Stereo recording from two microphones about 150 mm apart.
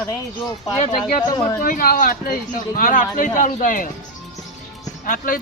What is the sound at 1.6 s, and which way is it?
Speech, 70° left (ahead or behind).